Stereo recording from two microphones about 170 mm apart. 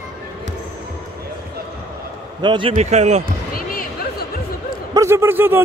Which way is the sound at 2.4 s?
30° right (ahead or behind).